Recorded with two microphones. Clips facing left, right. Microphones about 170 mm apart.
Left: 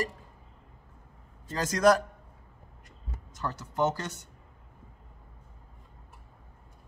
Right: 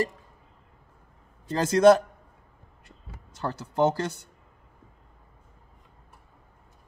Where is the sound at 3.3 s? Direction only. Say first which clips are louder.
Right 5 dB; 30° right (ahead or behind).